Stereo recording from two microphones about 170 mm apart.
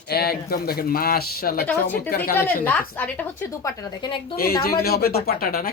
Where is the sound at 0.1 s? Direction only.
65° left (ahead or behind).